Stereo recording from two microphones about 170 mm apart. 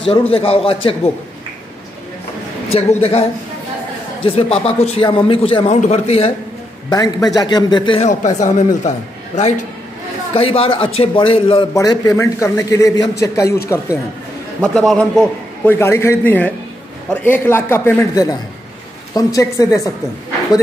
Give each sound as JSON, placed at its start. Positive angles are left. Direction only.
{"t": 0.3, "sound": "a man's voice", "side_deg": 35}
{"t": 2.7, "sound": "a man's voice", "side_deg": 35}
{"t": 6.9, "sound": "a man's voice", "side_deg": 25}
{"t": 8.0, "sound": "a man's voice", "side_deg": 45}
{"t": 11.7, "sound": "a man's voice", "side_deg": 20}
{"t": 14.6, "sound": "a man's voice", "side_deg": 5}